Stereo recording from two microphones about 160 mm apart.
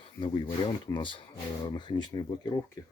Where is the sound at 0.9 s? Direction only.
30° left (ahead or behind).